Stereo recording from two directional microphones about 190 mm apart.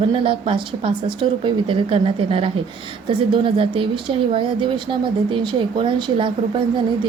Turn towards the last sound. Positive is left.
turn(degrees=-25)  # may be behind; listen again after turning